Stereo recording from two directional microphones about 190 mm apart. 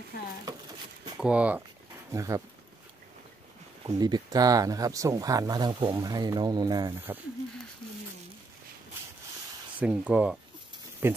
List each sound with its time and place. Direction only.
1.1 s speech: 5° right (ahead or behind)
2.1 s speech: 15° right (ahead or behind)
3.8 s speech: 20° right (ahead or behind)
9.8 s speech: 5° right (ahead or behind)